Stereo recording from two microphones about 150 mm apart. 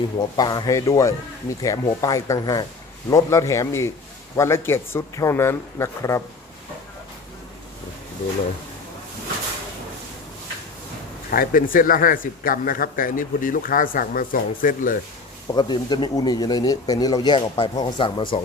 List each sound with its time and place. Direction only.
0.3 s speech: 30° left (ahead or behind)
11.3 s a man's voice: 70° left (ahead or behind)
15.5 s speech: 30° left (ahead or behind)